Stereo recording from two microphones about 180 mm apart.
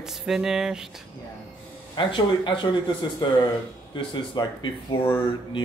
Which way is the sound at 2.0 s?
25° left (ahead or behind).